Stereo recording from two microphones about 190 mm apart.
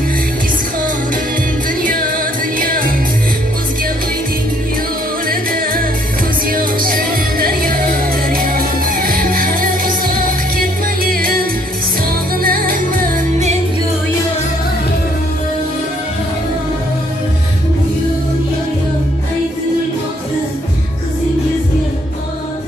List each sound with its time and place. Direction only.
1.8 s music: 45° right (ahead or behind)
5.3 s music: 50° right (ahead or behind)
12.4 s music: 50° right (ahead or behind)